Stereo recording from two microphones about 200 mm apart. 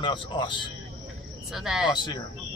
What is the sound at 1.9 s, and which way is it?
Speech, 20° left (ahead or behind).